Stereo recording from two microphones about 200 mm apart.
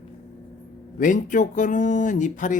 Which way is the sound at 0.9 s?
40° left (ahead or behind).